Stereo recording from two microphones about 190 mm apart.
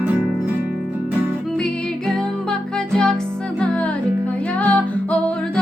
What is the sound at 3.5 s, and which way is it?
Music, 5° left (ahead or behind).